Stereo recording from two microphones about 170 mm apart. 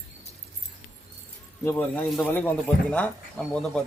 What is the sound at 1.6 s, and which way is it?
A man's voice, 10° left (ahead or behind).